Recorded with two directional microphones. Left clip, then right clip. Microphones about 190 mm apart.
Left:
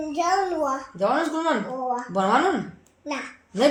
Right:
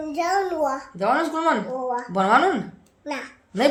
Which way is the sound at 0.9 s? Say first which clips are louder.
Right 1 dB; 30° right (ahead or behind).